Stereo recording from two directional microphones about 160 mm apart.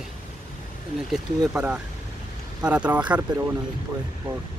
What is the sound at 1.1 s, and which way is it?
Speech, 5° right (ahead or behind).